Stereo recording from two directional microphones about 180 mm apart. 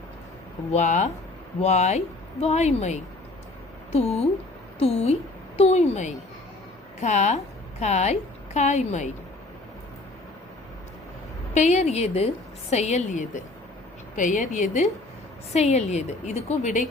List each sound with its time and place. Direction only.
0.7 s speech: 40° left (ahead or behind)
11.5 s speech: 40° left (ahead or behind)